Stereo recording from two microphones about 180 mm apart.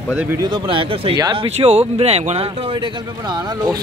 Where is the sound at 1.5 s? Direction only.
35° right (ahead or behind).